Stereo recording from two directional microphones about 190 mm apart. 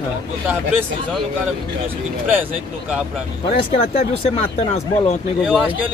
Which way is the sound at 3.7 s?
35° left (ahead or behind).